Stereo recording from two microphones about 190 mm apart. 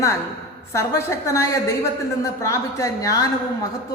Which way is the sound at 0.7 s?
15° left (ahead or behind).